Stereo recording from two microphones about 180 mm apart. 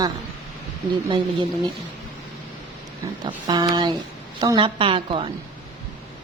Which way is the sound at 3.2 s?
25° right (ahead or behind).